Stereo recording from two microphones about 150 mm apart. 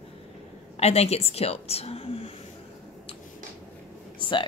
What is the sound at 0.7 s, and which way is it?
Speech, 45° left (ahead or behind).